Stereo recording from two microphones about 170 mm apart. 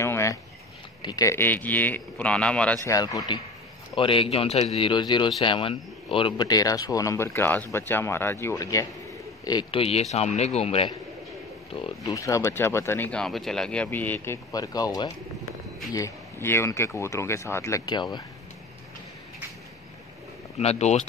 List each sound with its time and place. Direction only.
0.0 s a sound: 15° left (ahead or behind)
1.0 s speech: 20° left (ahead or behind)
2.8 s a man's voice: 20° left (ahead or behind)
20.5 s a man's voice: 40° left (ahead or behind)